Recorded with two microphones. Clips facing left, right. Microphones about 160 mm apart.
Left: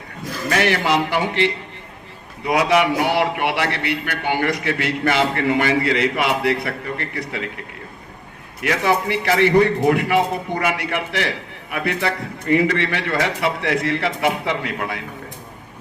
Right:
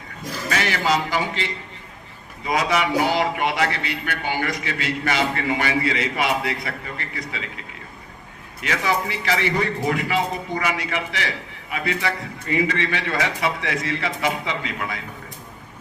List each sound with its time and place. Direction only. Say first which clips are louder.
0.5 s a man's voice: left 4 dB; 55° left (ahead or behind)
8.6 s a man's voice: left 4 dB; 55° left (ahead or behind)